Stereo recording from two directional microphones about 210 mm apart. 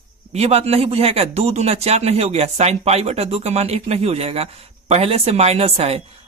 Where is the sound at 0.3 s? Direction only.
30° right (ahead or behind).